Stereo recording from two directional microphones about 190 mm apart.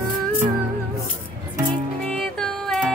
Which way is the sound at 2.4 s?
Centre (ahead or behind).